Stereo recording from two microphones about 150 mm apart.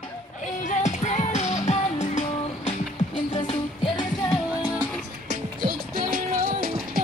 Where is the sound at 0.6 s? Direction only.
50° left (ahead or behind).